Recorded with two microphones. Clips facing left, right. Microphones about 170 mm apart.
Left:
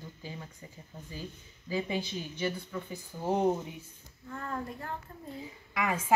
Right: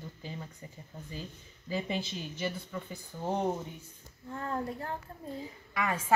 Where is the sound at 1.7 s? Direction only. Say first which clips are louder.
Left 2 dB; 5° left (ahead or behind).